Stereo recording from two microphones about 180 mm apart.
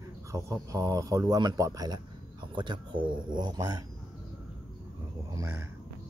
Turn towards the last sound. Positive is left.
turn(degrees=-15)  # may be behind; listen again after turning